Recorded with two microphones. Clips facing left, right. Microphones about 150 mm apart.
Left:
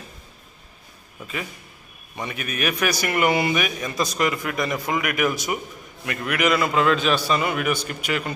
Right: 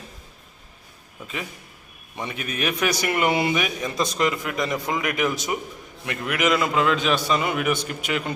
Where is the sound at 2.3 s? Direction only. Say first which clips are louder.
Left 1 dB; 25° right (ahead or behind).